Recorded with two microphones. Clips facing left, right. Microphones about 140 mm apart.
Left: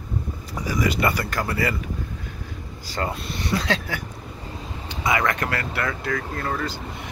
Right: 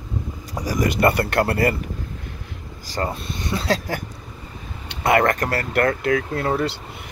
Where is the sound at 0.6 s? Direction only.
45° right (ahead or behind); by 1.7 s 60° right (ahead or behind).